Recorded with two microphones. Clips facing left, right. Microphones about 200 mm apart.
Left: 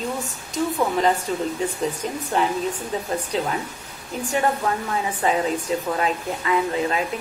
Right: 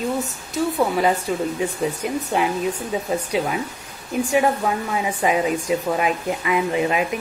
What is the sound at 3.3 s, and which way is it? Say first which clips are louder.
Speech: right 2 dB; 10° right (ahead or behind).